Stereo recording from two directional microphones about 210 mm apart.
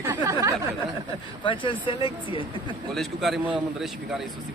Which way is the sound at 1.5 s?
25° left (ahead or behind).